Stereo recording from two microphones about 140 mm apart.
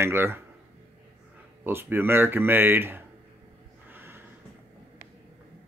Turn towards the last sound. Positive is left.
turn(degrees=-15)  # may be behind; listen again after turning